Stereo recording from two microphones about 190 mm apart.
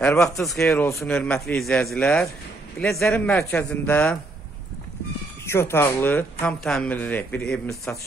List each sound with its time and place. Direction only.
0.0 s speech: 15° left (ahead or behind)
0.4 s speech: centre (ahead or behind)
5.5 s speech: 15° left (ahead or behind)